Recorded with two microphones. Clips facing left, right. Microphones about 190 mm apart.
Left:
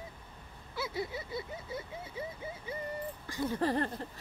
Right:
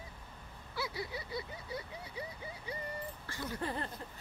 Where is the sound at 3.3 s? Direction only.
15° left (ahead or behind).